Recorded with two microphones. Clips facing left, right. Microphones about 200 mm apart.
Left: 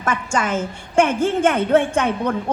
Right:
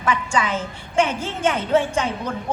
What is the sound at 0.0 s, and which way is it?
A woman's voice, 45° left (ahead or behind).